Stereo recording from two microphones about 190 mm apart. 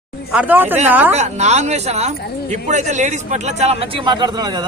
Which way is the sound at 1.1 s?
35° right (ahead or behind).